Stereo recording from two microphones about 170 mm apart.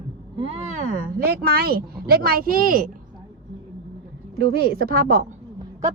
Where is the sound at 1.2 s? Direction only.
65° right (ahead or behind).